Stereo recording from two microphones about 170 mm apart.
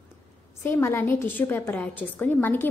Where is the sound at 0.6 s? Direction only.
15° left (ahead or behind).